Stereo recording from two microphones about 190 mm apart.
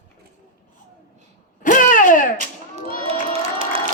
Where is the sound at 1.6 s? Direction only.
45° left (ahead or behind).